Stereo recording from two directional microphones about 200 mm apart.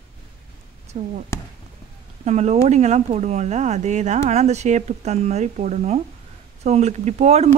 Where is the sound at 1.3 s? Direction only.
15° left (ahead or behind).